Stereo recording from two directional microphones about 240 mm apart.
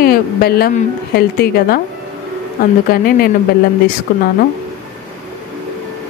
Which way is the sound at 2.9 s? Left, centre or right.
Left.